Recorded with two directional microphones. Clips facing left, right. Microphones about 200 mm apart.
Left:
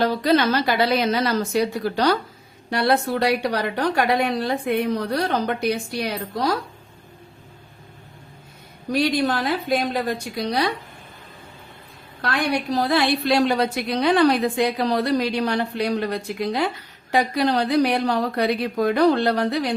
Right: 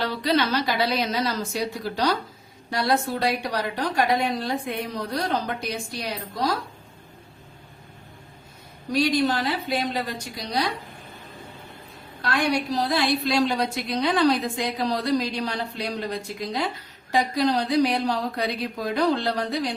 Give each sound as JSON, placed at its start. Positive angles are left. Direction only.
{"t": 0.0, "sound": "a woman's voice", "side_deg": 50}
{"t": 8.9, "sound": "a woman's voice", "side_deg": 60}
{"t": 12.2, "sound": "a woman's voice", "side_deg": 55}